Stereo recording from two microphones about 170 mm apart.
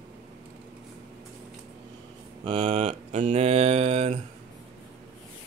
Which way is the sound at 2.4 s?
30° right (ahead or behind).